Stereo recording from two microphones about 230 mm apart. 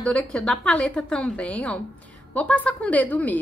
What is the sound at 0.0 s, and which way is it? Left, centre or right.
A woman's voice, centre.